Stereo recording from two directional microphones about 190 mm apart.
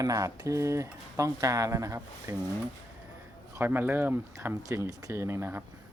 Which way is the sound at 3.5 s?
10° right (ahead or behind).